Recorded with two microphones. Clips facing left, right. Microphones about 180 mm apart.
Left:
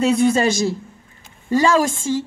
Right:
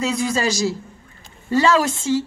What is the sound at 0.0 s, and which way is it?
Speech, 55° left (ahead or behind).